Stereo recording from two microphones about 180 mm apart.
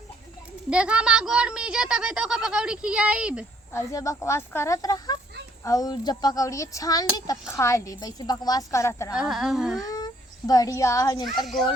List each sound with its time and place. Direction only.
0.7 s speech: 5° right (ahead or behind)
3.7 s a child's voice: 15° left (ahead or behind)
9.1 s speech: 5° right (ahead or behind)
9.8 s a child's voice: 20° left (ahead or behind)